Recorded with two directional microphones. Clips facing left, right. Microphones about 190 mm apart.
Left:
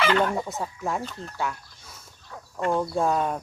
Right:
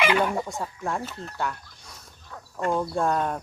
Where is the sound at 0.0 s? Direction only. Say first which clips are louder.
Even; 15° right (ahead or behind).